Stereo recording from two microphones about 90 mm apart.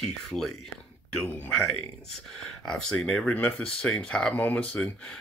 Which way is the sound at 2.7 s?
10° left (ahead or behind).